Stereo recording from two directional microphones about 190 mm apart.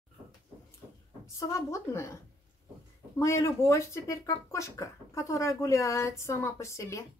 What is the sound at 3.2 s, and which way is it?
Speech, 15° left (ahead or behind).